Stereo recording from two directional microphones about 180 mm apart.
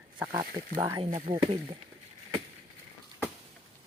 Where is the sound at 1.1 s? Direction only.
40° right (ahead or behind).